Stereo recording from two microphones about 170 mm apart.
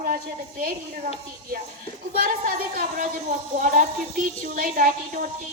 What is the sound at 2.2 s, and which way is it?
A woman's voice, 55° right (ahead or behind).